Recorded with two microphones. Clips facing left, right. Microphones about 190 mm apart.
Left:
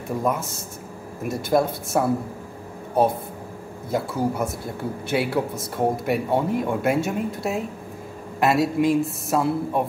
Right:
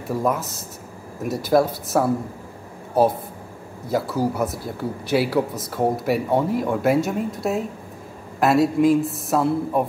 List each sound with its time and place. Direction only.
0.2 s speech: centre (ahead or behind)
3.9 s speech: centre (ahead or behind)